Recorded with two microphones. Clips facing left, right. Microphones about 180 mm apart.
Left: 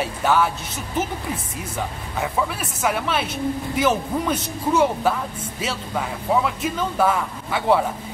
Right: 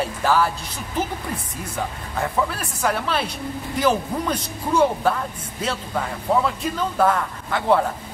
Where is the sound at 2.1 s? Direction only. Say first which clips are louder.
Right 1 dB; 5° left (ahead or behind).